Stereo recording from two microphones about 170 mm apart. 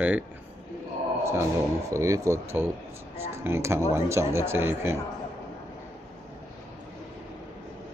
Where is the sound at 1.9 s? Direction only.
15° right (ahead or behind).